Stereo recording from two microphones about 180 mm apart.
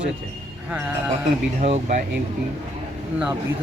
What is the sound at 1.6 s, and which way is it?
Speech, 40° right (ahead or behind).